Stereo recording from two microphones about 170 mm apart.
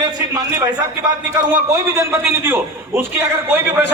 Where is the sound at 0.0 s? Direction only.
20° right (ahead or behind).